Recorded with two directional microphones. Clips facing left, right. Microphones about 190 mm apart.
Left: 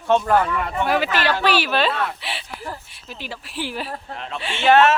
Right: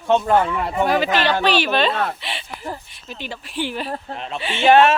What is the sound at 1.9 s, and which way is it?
Speech, 40° right (ahead or behind).